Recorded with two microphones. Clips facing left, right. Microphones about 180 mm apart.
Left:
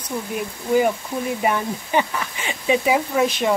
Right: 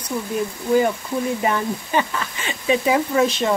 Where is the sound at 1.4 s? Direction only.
15° left (ahead or behind).